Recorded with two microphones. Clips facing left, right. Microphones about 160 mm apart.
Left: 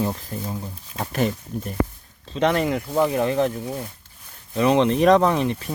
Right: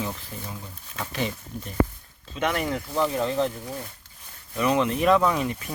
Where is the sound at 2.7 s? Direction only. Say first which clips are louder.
Left 5 dB; 15° left (ahead or behind).